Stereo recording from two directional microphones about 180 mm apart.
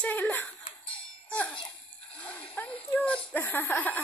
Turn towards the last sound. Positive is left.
turn(degrees=10)  # may be behind; listen again after turning